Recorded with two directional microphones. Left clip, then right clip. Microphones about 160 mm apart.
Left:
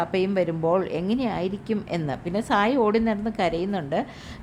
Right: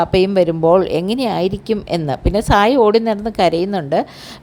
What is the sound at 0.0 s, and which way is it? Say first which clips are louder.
Speech: right 10 dB; 35° right (ahead or behind).